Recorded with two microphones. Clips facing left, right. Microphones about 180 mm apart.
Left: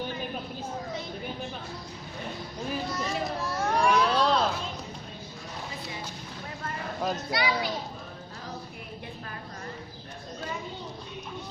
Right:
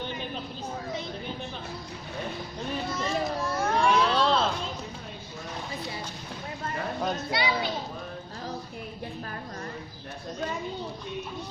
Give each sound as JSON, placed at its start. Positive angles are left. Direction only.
{"t": 2.6, "sound": "a sound", "side_deg": 0}
{"t": 7.0, "sound": "children playing", "side_deg": 0}
{"t": 7.3, "sound": "a child's voice", "side_deg": -25}